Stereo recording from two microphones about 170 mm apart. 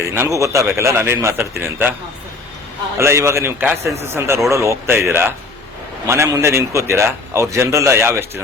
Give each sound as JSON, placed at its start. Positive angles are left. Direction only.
{"t": 0.0, "sound": "a man's voice", "side_deg": -15}
{"t": 3.0, "sound": "a man's voice", "side_deg": -15}